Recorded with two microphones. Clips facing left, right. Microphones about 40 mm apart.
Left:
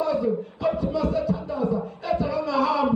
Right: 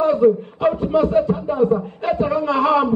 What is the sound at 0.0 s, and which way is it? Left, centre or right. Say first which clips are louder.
Speech: right 9 dB; right.